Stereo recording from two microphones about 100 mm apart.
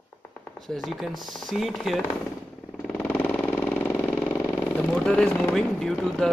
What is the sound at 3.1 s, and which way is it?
Vehicle, 15° left (ahead or behind).